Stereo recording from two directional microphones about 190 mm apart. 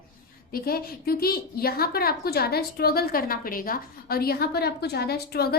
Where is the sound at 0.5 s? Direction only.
50° left (ahead or behind).